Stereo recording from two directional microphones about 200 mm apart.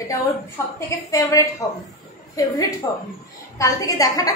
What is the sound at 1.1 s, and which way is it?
A woman's voice, 15° left (ahead or behind).